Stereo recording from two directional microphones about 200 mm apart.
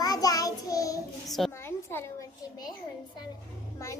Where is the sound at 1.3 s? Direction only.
Centre (ahead or behind).